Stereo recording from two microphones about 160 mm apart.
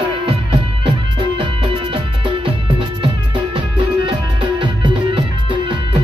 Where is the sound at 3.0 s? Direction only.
35° right (ahead or behind).